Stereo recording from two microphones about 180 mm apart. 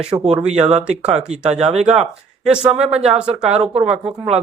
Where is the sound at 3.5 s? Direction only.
35° right (ahead or behind).